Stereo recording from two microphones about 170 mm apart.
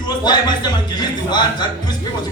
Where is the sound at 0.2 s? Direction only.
25° left (ahead or behind).